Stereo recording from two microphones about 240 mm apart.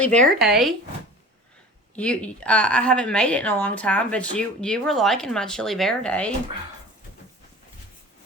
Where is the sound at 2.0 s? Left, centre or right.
Centre.